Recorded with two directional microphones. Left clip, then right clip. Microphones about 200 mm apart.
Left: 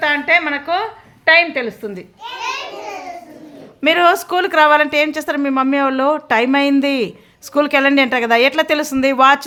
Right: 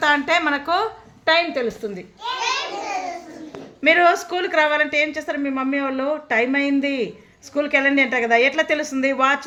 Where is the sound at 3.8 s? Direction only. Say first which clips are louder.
Left 3 dB; 20° left (ahead or behind).